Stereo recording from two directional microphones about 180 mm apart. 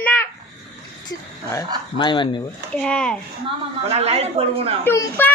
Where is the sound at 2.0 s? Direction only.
25° left (ahead or behind).